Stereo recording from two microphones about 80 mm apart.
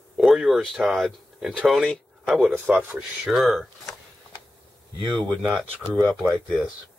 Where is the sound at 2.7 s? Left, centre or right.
Right.